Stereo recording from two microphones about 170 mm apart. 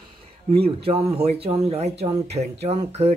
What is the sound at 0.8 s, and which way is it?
Speech, 35° right (ahead or behind).